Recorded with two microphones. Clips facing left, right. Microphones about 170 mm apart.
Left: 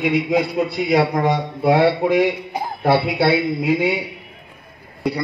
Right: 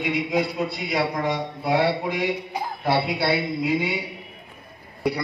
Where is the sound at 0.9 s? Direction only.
70° left (ahead or behind).